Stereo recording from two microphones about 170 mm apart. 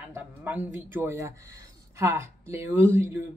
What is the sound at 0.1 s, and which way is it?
Speech, 10° right (ahead or behind).